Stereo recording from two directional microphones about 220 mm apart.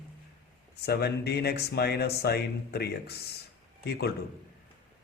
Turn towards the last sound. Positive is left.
turn(degrees=50)  # may be behind; listen again after turning